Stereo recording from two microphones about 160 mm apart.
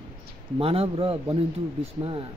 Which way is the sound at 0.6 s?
35° right (ahead or behind).